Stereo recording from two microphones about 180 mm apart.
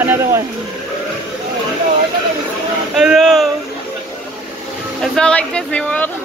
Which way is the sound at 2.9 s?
5° right (ahead or behind).